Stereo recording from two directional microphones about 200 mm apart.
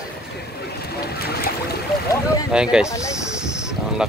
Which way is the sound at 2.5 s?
5° right (ahead or behind).